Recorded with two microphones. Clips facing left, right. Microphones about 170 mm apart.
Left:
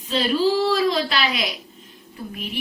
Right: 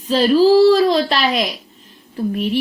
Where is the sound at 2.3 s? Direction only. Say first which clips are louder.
Right 13 dB; 35° right (ahead or behind).